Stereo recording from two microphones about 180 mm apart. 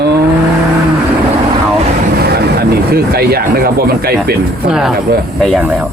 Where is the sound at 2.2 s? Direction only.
60° right (ahead or behind).